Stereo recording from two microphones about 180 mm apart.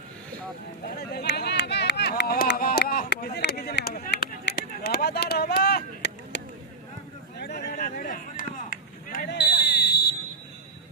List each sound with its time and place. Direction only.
0.9 s run: 65° left (ahead or behind)
7.3 s chop: 65° left (ahead or behind)
9.2 s fire alarm: 65° left (ahead or behind)